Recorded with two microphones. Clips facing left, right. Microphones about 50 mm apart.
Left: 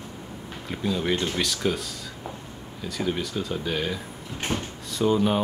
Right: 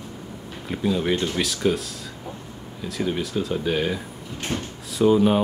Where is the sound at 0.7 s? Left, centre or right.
Centre.